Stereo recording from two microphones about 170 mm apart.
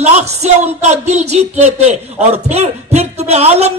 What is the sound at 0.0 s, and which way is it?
Speech, 40° right (ahead or behind).